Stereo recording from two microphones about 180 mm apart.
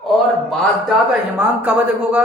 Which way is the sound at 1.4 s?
10° right (ahead or behind).